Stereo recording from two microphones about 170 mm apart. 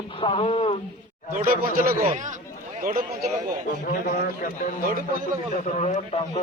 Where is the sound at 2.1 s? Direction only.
45° right (ahead or behind).